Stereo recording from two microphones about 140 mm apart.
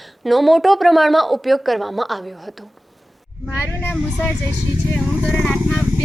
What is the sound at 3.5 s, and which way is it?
Speech, 15° left (ahead or behind).